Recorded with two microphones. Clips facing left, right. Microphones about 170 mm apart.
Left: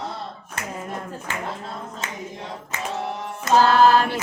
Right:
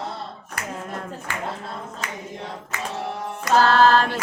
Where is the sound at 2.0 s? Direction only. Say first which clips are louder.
Right 1 dB; 25° left (ahead or behind).